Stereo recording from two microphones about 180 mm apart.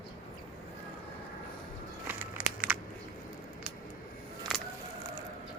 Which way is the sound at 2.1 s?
10° right (ahead or behind).